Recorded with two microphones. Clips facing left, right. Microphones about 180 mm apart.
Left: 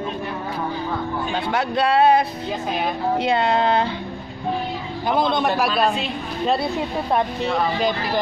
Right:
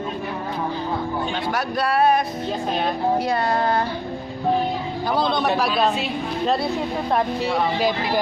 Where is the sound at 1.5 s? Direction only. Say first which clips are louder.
Left 4 dB; 25° left (ahead or behind).